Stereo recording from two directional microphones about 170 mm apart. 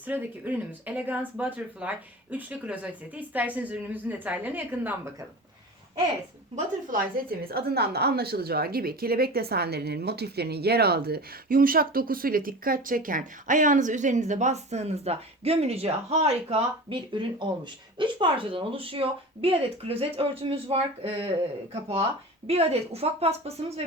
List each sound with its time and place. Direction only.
0.0 s speech: 10° right (ahead or behind)
6.9 s a woman's voice: 60° right (ahead or behind); by 23.8 s 35° right (ahead or behind)